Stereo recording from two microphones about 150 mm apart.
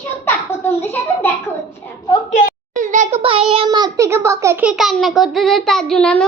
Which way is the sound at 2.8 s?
55° right (ahead or behind).